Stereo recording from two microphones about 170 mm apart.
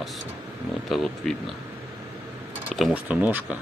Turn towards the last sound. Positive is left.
turn(degrees=-10)  # may be behind; listen again after turning